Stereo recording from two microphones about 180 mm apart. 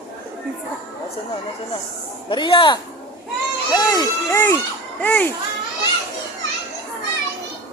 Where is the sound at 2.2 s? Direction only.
25° left (ahead or behind); by 5.2 s 10° left (ahead or behind).